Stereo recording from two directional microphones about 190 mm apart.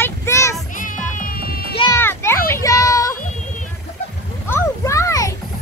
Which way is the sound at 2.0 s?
10° left (ahead or behind).